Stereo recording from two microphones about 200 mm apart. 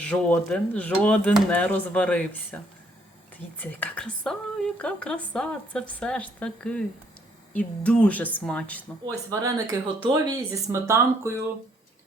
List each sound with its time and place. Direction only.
0.0 s speech: 5° left (ahead or behind)
3.6 s a woman's voice: 10° left (ahead or behind)
7.9 s speech: 5° left (ahead or behind)
9.3 s speech: 15° right (ahead or behind)